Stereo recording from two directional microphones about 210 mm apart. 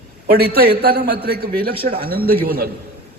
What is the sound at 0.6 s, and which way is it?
A man's voice, 50° right (ahead or behind).